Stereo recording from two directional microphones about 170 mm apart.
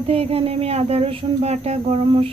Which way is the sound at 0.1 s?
35° right (ahead or behind).